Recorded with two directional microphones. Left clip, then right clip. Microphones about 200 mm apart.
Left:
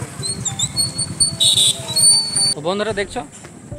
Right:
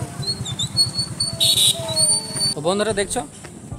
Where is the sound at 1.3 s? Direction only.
Centre (ahead or behind).